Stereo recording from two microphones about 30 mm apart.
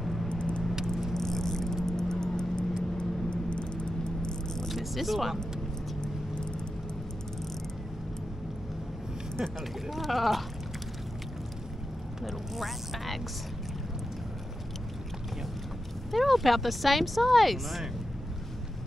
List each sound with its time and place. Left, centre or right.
0.0 s vehicle: centre
0.3 s vehicle: left
1.1 s vehicle: centre
3.4 s a sound: left
4.6 s vehicle: centre
5.9 s vehicle: left
9.4 s speech: centre
9.8 s speech: centre
12.3 s speech: centre
16.2 s speech: centre